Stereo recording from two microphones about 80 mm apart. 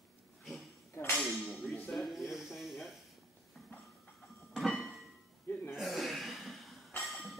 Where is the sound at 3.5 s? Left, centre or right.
Centre.